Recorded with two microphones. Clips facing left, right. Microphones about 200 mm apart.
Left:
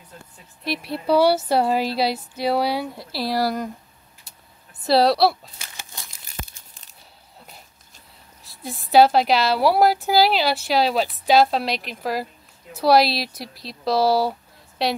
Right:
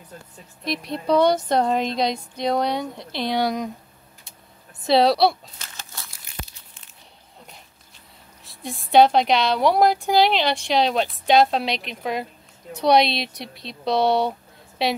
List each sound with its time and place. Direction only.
0.7 s speech: 5° left (ahead or behind)
4.3 s a sound: centre (ahead or behind)
4.8 s a woman's voice: centre (ahead or behind)
5.8 s crumpling: 15° left (ahead or behind)
6.4 s crumpling: 45° left (ahead or behind)
8.5 s a woman's voice: centre (ahead or behind)